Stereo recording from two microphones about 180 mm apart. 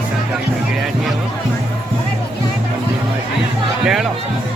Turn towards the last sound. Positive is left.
turn(degrees=0)  # may be behind; listen again after turning